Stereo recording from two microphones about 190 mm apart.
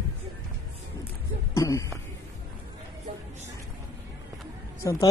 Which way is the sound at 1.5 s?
15° left (ahead or behind).